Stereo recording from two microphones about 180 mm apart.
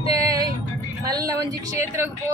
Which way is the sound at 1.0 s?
20° right (ahead or behind).